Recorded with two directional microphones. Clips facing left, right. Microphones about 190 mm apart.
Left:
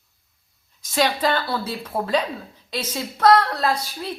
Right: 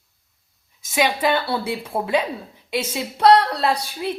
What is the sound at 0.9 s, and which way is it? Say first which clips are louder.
A woman's voice: right 1 dB; 10° right (ahead or behind).